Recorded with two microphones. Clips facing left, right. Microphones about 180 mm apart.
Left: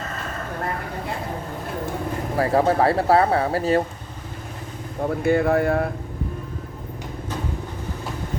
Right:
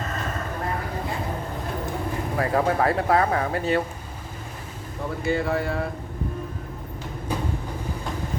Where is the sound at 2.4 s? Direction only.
30° left (ahead or behind).